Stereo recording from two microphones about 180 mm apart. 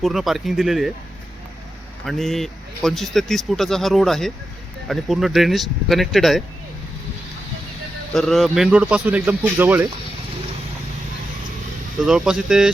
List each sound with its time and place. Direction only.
0.0 s speech: centre (ahead or behind)
2.0 s speech: centre (ahead or behind)
8.1 s speech: centre (ahead or behind)
12.0 s speech: 5° right (ahead or behind)